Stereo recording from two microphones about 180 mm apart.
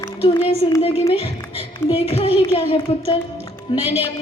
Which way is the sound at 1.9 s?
30° left (ahead or behind).